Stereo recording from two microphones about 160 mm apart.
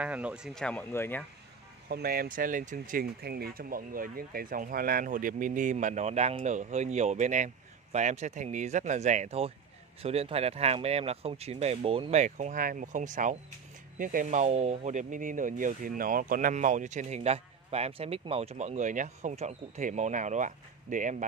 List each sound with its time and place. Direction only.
0.0 s speech: 10° right (ahead or behind)
0.7 s speech: 10° left (ahead or behind)
1.9 s speech: 70° right (ahead or behind); by 21.3 s 50° right (ahead or behind)